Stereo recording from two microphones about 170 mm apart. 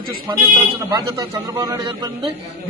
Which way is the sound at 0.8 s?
20° right (ahead or behind).